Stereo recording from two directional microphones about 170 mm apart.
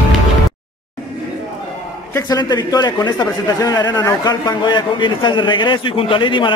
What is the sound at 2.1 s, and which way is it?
A man's voice, 20° left (ahead or behind).